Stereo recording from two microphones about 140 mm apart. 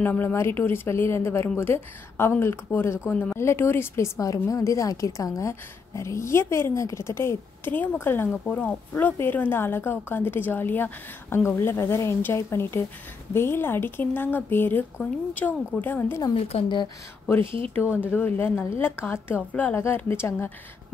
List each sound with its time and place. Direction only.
0.0 s a woman's voice: 15° left (ahead or behind)
16.3 s a woman's voice: 40° left (ahead or behind)
17.4 s speech: 40° right (ahead or behind)
17.7 s a woman's voice: 15° left (ahead or behind)